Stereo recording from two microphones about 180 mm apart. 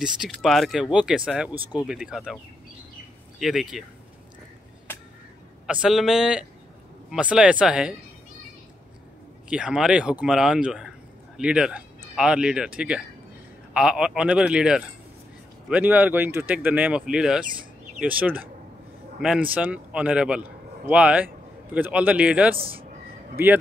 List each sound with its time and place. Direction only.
0.0 s speech: centre (ahead or behind)
3.3 s speech: centre (ahead or behind)
4.9 s a sound: 10° left (ahead or behind)
5.7 s speech: 5° right (ahead or behind)
9.5 s a man's voice: 5° right (ahead or behind)
22.6 s speech: 30° right (ahead or behind)